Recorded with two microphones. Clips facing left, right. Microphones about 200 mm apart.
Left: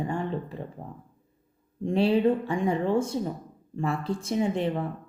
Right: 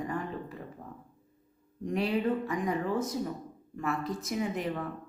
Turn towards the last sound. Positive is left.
turn(degrees=30)  # may be behind; listen again after turning